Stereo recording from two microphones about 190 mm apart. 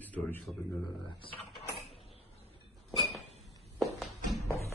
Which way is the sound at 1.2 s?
30° left (ahead or behind).